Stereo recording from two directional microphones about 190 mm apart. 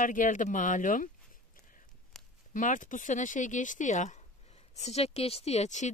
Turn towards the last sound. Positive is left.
turn(degrees=35)  # may be behind; listen again after turning